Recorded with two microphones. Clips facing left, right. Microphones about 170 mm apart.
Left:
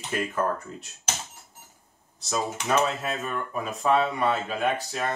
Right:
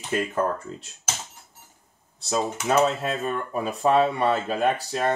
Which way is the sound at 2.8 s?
30° right (ahead or behind).